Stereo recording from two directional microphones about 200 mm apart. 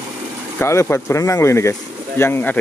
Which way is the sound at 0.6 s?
10° left (ahead or behind).